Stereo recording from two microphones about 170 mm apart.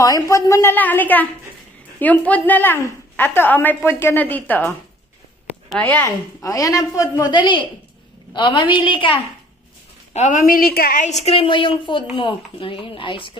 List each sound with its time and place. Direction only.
0.0 s a woman's voice: 20° left (ahead or behind)
10.1 s a woman's voice: 45° left (ahead or behind)
11.2 s a woman's voice: 30° left (ahead or behind)